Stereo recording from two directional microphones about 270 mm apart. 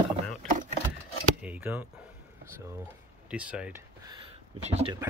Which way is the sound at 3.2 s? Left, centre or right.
Centre.